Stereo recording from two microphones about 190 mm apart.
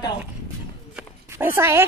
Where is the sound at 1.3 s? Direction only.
15° right (ahead or behind).